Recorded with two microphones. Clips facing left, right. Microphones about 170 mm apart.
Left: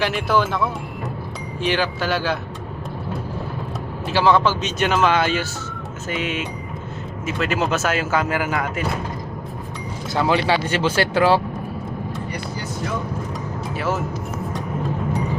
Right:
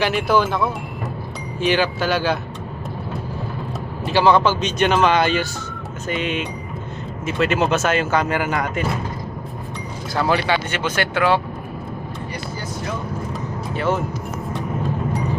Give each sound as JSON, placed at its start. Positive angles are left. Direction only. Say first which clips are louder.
{"t": 0.0, "sound": "speech", "louder": "right 2 dB", "side_deg": 0}
{"t": 4.0, "sound": "speech", "louder": "right 2 dB", "side_deg": 0}
{"t": 10.2, "sound": "speech", "louder": "left 1 dB", "side_deg": 20}
{"t": 13.7, "sound": "speech", "louder": "right 3 dB", "side_deg": 5}